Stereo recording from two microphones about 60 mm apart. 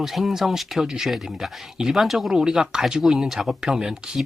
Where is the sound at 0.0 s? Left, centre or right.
Centre.